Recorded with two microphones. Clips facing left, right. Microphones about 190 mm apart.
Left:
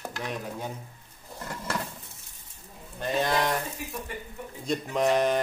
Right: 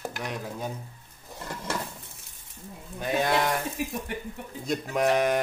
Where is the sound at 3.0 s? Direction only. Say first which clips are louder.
Right 1 dB; 5° right (ahead or behind).